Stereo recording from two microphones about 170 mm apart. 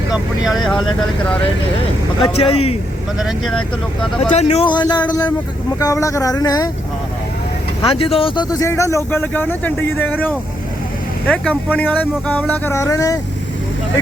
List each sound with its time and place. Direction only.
0.6 s speech: 5° left (ahead or behind)
2.2 s speech: 35° left (ahead or behind)
3.2 s speech: centre (ahead or behind)
4.2 s speech: 40° left (ahead or behind); by 6.7 s 20° left (ahead or behind)
7.8 s speech: 30° left (ahead or behind)
8.5 s speech: 15° left (ahead or behind)